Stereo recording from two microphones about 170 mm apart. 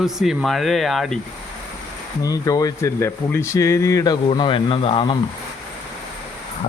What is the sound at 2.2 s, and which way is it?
Speech, 20° left (ahead or behind).